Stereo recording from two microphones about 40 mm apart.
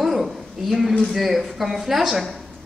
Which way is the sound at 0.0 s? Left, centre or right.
Centre.